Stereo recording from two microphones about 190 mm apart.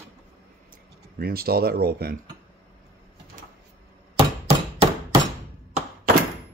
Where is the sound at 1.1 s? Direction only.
50° right (ahead or behind).